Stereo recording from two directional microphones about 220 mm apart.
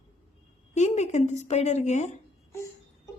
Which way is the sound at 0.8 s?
30° left (ahead or behind).